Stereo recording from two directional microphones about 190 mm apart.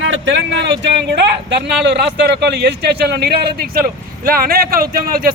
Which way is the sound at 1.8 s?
65° right (ahead or behind).